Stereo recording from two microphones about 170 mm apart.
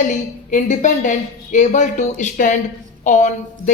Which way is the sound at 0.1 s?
45° left (ahead or behind).